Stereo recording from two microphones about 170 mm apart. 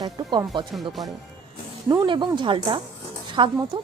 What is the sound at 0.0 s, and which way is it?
Speech, 25° right (ahead or behind).